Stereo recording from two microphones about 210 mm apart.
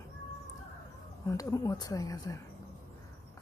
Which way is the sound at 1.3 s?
15° left (ahead or behind).